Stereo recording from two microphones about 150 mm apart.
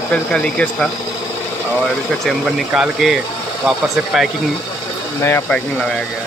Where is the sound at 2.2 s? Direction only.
5° right (ahead or behind).